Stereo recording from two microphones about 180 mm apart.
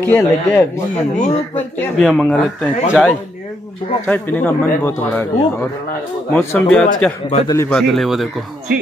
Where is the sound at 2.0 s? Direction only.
Centre (ahead or behind).